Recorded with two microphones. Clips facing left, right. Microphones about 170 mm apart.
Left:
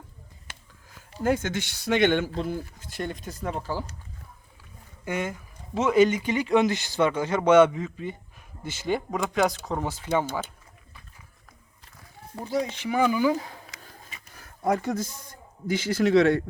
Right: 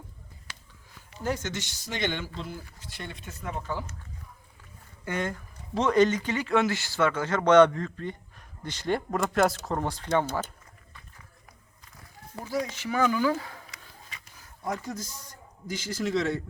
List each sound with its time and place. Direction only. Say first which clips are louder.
1.2 s speech: left 6 dB; 55° left (ahead or behind); by 3.9 s 35° left (ahead or behind)
5.0 s speech: left 1 dB; 10° left (ahead or behind)
12.5 s speech: left 3 dB; 25° left (ahead or behind)
12.8 s speech: left 2 dB; 15° left (ahead or behind)
14.3 s a man's voice: left 8 dB; 60° left (ahead or behind)